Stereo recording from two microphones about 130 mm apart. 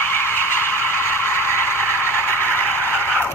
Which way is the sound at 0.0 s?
15° left (ahead or behind).